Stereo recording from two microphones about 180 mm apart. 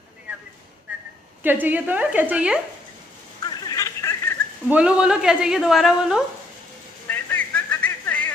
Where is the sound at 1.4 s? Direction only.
10° right (ahead or behind).